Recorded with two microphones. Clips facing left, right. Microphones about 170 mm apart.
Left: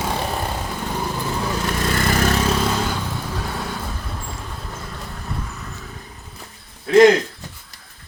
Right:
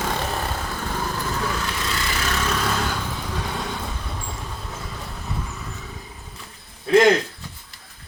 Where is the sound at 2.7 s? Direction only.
10° left (ahead or behind).